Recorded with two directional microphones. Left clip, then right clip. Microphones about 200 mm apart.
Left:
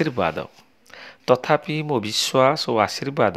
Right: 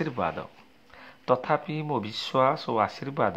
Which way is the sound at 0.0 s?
40° left (ahead or behind).